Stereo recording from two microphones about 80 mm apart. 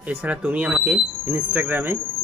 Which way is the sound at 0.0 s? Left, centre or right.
Centre.